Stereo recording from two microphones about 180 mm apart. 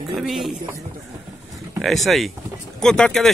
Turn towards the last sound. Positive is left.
turn(degrees=5)  # may be behind; listen again after turning